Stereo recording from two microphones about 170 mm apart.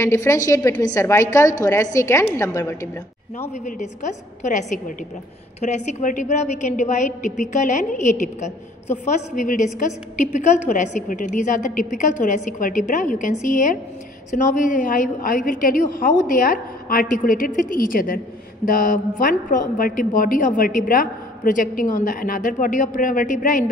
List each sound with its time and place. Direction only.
0.0 s a woman's voice: 15° left (ahead or behind)
3.6 s a woman's voice: 45° left (ahead or behind)